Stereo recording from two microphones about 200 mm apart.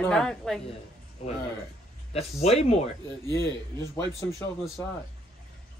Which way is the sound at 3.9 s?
15° left (ahead or behind).